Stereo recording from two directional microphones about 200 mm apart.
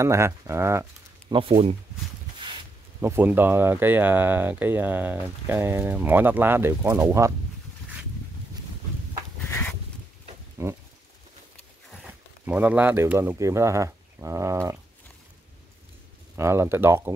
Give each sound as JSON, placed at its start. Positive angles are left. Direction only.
{"t": 0.0, "sound": "speech", "side_deg": -15}
{"t": 1.3, "sound": "speech", "side_deg": -25}
{"t": 3.0, "sound": "speech", "side_deg": -10}
{"t": 9.4, "sound": "a sound", "side_deg": 10}
{"t": 10.6, "sound": "speech", "side_deg": -15}
{"t": 12.0, "sound": "speech", "side_deg": -10}
{"t": 16.3, "sound": "speech", "side_deg": -10}